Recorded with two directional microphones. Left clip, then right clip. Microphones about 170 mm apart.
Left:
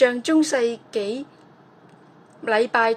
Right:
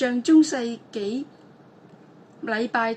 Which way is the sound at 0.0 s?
40° left (ahead or behind).